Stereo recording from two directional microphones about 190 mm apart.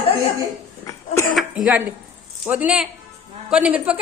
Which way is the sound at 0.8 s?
15° left (ahead or behind).